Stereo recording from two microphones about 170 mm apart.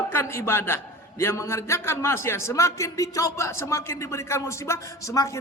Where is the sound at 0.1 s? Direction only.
15° left (ahead or behind).